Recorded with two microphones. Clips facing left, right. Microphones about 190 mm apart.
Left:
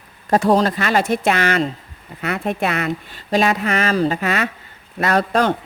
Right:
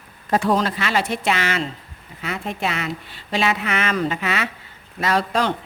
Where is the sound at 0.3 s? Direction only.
40° left (ahead or behind).